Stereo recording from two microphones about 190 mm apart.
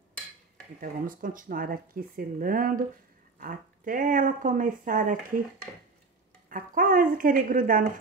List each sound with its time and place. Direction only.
0.7 s speech: 45° right (ahead or behind)
6.5 s speech: 45° right (ahead or behind)